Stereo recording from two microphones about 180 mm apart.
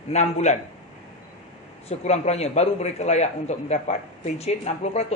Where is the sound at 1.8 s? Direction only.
40° left (ahead or behind).